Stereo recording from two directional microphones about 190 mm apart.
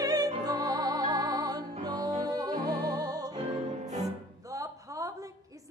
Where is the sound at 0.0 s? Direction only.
20° right (ahead or behind).